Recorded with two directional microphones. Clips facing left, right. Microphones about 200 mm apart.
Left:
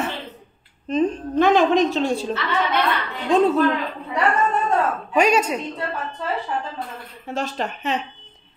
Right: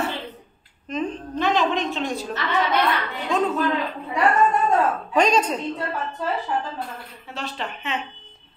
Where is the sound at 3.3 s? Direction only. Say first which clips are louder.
Left 6 dB; 35° left (ahead or behind).